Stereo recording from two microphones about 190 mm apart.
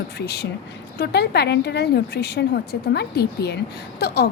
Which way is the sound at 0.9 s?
60° left (ahead or behind).